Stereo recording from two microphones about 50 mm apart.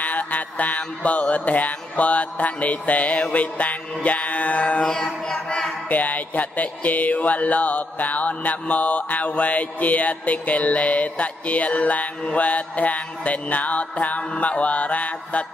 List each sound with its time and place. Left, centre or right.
0.0 s mantra: left
4.8 s music: centre
5.9 s mantra: left